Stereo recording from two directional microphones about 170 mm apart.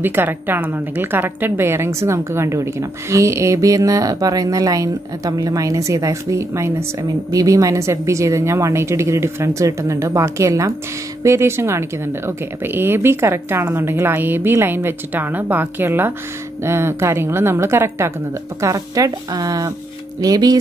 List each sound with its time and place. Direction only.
0.0 s a woman's voice: 10° right (ahead or behind)